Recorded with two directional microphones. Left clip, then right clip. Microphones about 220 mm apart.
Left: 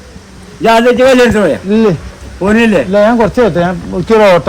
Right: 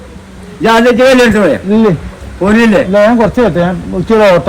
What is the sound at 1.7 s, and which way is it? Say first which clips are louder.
Speech: even; 20° left (ahead or behind).